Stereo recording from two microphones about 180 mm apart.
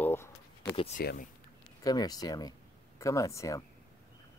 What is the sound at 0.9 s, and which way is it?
Speech, 55° left (ahead or behind).